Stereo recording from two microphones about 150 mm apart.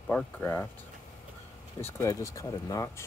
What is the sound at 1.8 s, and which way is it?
Speech, 15° left (ahead or behind).